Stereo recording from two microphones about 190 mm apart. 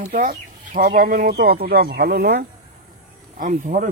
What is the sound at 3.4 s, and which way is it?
Speech, 40° right (ahead or behind).